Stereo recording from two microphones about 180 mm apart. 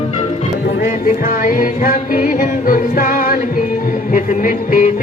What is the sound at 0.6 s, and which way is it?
Music, 50° left (ahead or behind).